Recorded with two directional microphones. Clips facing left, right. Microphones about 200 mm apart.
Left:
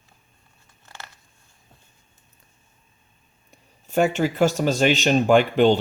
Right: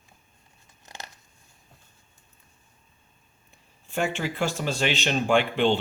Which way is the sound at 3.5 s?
40° left (ahead or behind).